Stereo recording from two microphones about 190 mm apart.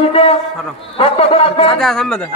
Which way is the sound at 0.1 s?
30° left (ahead or behind).